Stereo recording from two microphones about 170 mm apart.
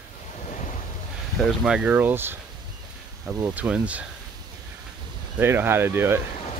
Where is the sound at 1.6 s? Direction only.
5° right (ahead or behind).